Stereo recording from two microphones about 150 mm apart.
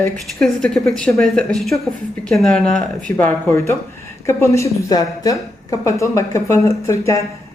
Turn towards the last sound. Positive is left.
turn(degrees=20)  # may be behind; listen again after turning